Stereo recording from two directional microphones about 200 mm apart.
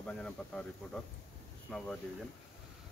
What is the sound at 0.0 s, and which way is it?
A man's voice, 5° left (ahead or behind).